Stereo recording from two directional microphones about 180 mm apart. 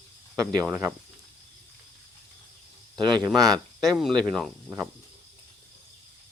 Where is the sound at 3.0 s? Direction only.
25° right (ahead or behind).